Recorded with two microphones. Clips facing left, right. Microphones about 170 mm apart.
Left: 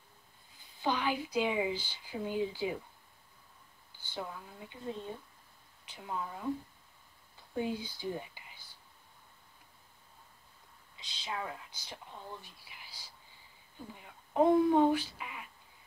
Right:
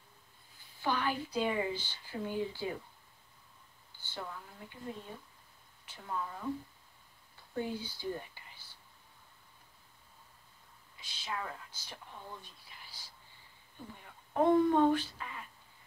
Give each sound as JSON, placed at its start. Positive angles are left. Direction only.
{"t": 0.8, "sound": "speech", "side_deg": 15}
{"t": 4.1, "sound": "speech", "side_deg": 15}
{"t": 7.5, "sound": "speech", "side_deg": 15}
{"t": 11.0, "sound": "speech", "side_deg": 20}